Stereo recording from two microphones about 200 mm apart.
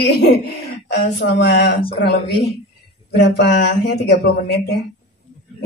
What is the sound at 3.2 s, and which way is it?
Speech, 55° left (ahead or behind).